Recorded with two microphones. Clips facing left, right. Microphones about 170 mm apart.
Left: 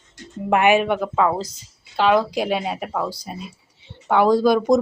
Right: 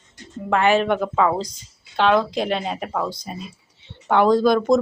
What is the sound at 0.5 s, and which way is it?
Speech, 15° left (ahead or behind).